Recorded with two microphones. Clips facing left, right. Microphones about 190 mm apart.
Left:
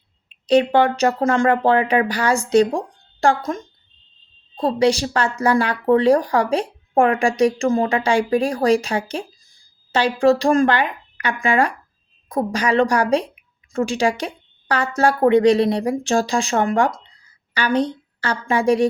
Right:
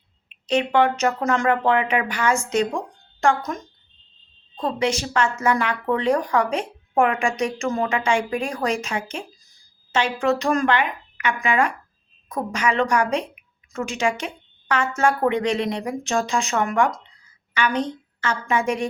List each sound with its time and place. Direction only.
0.4 s a woman's voice: 35° left (ahead or behind)